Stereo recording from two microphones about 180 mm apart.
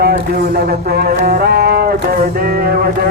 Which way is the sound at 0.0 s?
60° right (ahead or behind).